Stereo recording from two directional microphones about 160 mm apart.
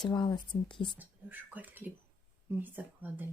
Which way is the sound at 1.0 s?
10° right (ahead or behind).